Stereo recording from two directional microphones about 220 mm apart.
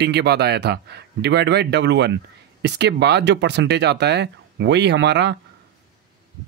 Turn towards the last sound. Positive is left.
turn(degrees=-50)  # may be behind; listen again after turning